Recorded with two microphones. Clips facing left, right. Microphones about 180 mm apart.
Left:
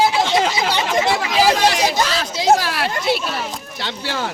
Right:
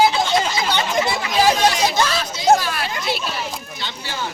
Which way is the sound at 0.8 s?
90° left.